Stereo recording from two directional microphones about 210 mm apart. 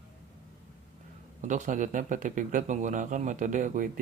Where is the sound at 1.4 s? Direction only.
35° right (ahead or behind).